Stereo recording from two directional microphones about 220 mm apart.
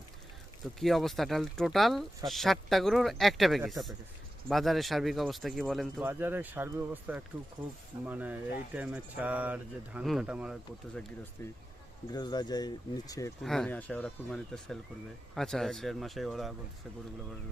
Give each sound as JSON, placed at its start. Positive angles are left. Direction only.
{"t": 0.8, "sound": "speech", "side_deg": 0}
{"t": 12.1, "sound": "speech", "side_deg": 20}
{"t": 13.4, "sound": "speech", "side_deg": 0}